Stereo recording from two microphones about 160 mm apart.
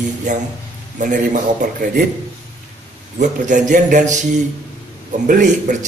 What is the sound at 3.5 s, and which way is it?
Speech, 50° right (ahead or behind).